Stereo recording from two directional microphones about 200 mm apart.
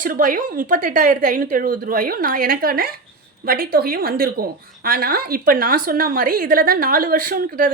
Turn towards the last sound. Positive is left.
turn(degrees=-45)  # may be behind; listen again after turning